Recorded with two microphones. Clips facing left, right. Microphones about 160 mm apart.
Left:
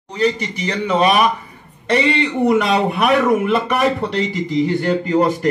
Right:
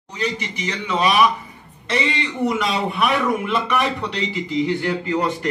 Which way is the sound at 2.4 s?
40° left (ahead or behind).